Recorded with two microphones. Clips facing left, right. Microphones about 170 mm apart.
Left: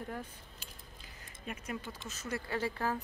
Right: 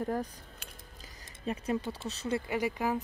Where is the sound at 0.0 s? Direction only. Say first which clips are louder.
Right 9 dB; 40° right (ahead or behind).